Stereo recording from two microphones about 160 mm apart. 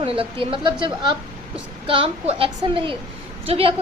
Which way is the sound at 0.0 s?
35° right (ahead or behind).